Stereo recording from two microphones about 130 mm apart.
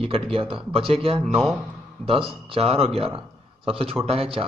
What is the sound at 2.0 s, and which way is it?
A man's voice, 45° right (ahead or behind).